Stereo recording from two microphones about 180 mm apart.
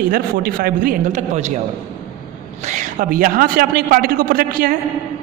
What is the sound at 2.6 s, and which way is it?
A man's voice, 45° right (ahead or behind).